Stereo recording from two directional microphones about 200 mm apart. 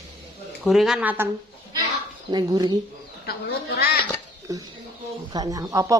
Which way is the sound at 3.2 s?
55° left (ahead or behind).